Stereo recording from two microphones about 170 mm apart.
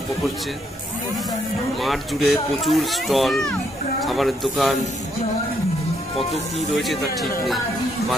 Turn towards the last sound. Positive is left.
turn(degrees=0)  # may be behind; listen again after turning